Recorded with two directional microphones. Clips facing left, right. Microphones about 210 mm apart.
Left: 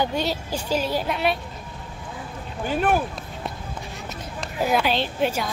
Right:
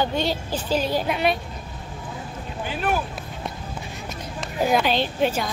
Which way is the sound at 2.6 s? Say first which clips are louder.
Left 4 dB; 50° left (ahead or behind).